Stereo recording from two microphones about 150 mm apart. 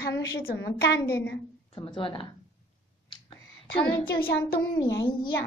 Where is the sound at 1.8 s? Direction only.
35° left (ahead or behind).